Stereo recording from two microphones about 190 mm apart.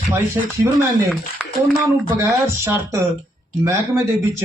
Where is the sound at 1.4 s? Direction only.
10° right (ahead or behind).